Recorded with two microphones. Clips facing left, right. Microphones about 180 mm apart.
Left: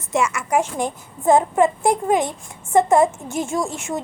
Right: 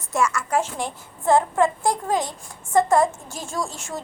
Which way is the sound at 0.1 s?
20° left (ahead or behind).